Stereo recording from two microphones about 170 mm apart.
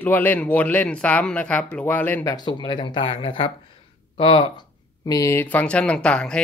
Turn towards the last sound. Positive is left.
turn(degrees=5)  # may be behind; listen again after turning